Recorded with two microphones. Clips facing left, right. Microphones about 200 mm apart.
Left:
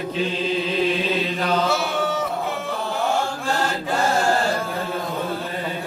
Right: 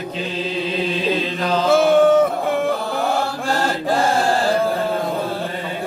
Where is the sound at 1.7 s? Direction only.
50° right (ahead or behind).